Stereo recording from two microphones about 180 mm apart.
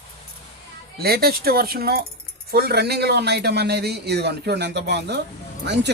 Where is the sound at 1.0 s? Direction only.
60° right (ahead or behind).